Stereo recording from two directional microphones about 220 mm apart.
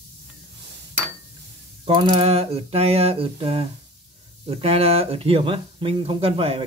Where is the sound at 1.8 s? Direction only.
25° right (ahead or behind).